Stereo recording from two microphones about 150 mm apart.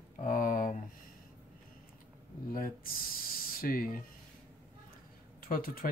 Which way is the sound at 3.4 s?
70° left (ahead or behind).